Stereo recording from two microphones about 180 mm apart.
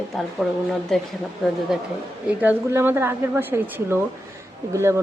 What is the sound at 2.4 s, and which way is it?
A woman's voice, 10° right (ahead or behind).